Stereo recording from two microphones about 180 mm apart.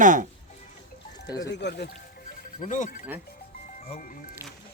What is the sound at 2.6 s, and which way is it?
Speech, 45° left (ahead or behind).